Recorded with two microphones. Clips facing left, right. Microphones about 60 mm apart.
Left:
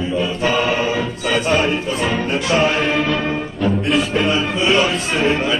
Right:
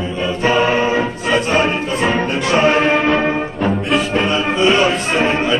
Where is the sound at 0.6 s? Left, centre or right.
Right.